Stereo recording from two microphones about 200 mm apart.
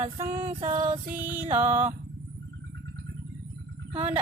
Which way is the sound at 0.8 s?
40° right (ahead or behind).